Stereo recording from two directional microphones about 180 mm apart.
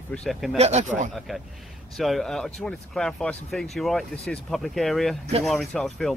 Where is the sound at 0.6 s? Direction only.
40° right (ahead or behind).